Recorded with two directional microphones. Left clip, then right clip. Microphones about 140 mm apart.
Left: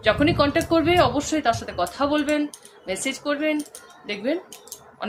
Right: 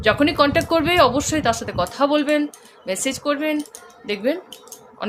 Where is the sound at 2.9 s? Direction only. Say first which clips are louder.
Right 3 dB; 60° right (ahead or behind).